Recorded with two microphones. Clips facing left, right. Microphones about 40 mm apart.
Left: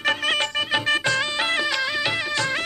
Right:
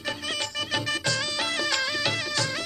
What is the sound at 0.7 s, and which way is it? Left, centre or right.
Music, left.